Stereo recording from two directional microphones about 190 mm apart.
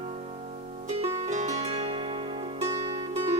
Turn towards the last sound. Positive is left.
turn(degrees=-30)  # may be behind; listen again after turning